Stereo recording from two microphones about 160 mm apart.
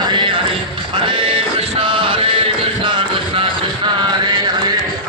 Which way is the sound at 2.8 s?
30° right (ahead or behind).